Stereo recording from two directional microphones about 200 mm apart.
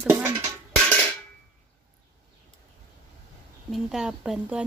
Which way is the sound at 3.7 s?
5° right (ahead or behind).